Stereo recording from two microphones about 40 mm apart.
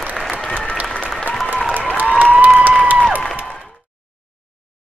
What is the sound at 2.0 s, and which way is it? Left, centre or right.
Applause, right.